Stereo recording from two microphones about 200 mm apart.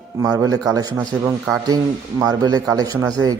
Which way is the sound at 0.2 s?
15° right (ahead or behind).